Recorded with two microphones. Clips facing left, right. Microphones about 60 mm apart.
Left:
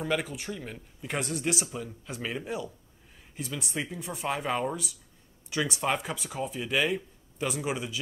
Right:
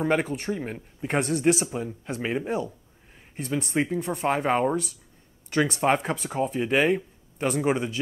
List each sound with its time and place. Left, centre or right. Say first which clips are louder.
0.0 s speech: right 6 dB; right
3.7 s speech: right 10 dB; right
4.0 s a man's voice: right 7 dB; right